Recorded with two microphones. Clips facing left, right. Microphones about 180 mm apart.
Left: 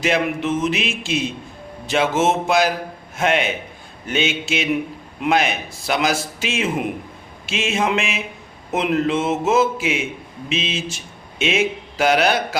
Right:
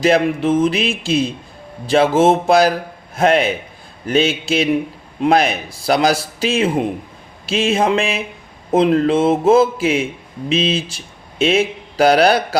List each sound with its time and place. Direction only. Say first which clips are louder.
0.0 s a man's voice: right 6 dB; 35° right (ahead or behind)